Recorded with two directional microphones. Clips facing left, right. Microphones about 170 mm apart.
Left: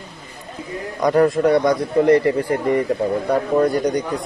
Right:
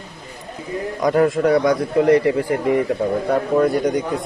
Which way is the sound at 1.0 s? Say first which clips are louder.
Left 1 dB; centre (ahead or behind).